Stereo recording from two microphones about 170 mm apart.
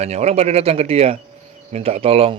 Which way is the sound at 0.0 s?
40° right (ahead or behind).